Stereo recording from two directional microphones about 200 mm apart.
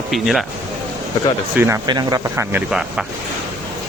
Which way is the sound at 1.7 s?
20° right (ahead or behind).